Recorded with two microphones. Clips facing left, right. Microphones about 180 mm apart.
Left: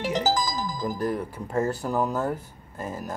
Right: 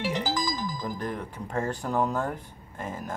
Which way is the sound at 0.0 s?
40° left (ahead or behind).